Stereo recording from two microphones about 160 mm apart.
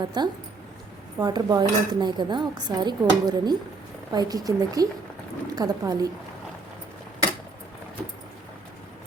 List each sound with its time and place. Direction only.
0.0 s speech: 25° right (ahead or behind)